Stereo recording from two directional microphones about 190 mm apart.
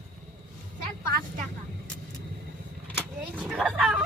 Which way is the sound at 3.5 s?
5° right (ahead or behind).